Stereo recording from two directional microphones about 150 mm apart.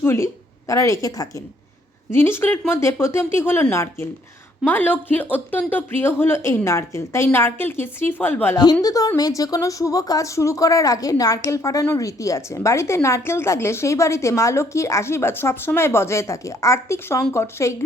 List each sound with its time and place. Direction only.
0.0 s a woman's voice: 15° left (ahead or behind)
8.5 s a woman's voice: 25° left (ahead or behind)